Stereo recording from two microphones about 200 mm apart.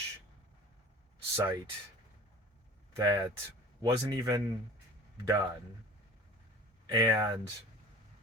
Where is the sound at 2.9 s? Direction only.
20° right (ahead or behind).